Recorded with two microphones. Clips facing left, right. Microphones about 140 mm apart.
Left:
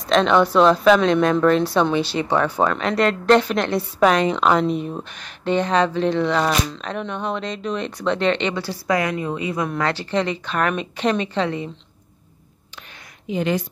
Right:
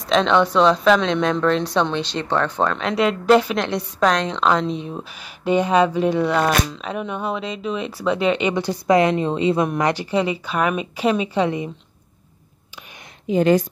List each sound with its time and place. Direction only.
0.0 s speech: centre (ahead or behind)
5.4 s speech: 10° right (ahead or behind)
13.3 s a woman's voice: 40° right (ahead or behind)